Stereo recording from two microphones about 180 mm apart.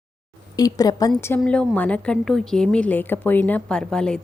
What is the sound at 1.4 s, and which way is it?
A woman's voice, 5° left (ahead or behind).